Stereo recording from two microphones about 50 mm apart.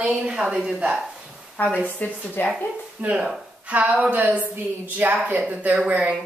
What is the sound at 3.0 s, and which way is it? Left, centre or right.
Speech, right.